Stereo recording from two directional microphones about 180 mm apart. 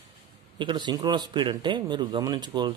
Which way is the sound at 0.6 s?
25° right (ahead or behind).